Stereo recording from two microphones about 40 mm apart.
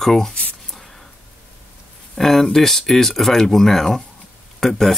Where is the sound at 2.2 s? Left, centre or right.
Centre.